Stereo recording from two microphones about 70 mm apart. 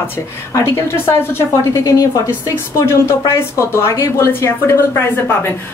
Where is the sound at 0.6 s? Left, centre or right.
Left.